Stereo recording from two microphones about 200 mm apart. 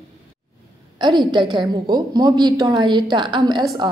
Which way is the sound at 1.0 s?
20° right (ahead or behind).